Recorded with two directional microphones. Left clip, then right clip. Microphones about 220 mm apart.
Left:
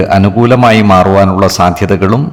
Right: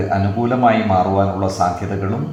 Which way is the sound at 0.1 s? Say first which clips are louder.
Left 10 dB; 45° left (ahead or behind).